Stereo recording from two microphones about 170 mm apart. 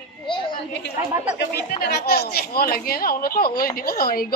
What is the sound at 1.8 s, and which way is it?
Speech, 70° left (ahead or behind).